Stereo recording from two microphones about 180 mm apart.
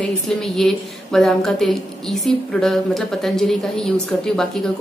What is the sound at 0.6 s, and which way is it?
A woman's voice, centre (ahead or behind).